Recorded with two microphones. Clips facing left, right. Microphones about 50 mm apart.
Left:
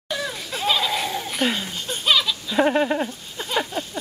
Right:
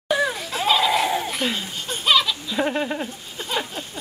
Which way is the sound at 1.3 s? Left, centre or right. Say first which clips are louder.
Left 2 dB; centre.